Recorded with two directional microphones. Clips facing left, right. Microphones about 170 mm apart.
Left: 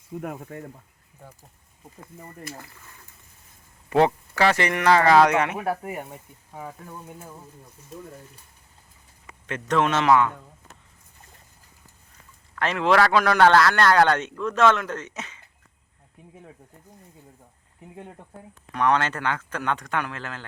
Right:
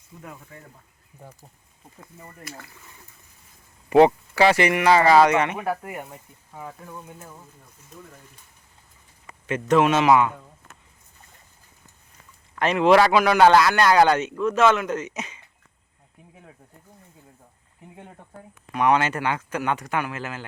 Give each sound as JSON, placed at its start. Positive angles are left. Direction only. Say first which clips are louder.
{"t": 0.2, "sound": "speech", "louder": "left 8 dB", "side_deg": 55}
{"t": 1.2, "sound": "a man's voice", "louder": "right 2 dB", "side_deg": -10}
{"t": 3.8, "sound": "a man's voice", "louder": "right 5 dB", "side_deg": -15}
{"t": 6.5, "sound": "speech", "louder": "even", "side_deg": 15}
{"t": 9.2, "sound": "a man's voice", "louder": "right 5 dB", "side_deg": -5}
{"t": 12.5, "sound": "a man's voice", "louder": "right 4 dB", "side_deg": -15}
{"t": 18.7, "sound": "a man's voice", "louder": "right 2 dB", "side_deg": -10}